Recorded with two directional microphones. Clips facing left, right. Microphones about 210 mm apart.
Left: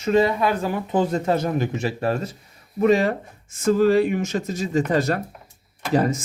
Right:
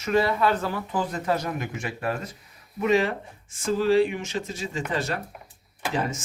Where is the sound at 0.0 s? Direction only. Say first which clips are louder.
Left 4 dB; 20° left (ahead or behind).